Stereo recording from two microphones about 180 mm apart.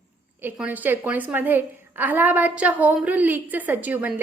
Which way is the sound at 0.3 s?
10° right (ahead or behind).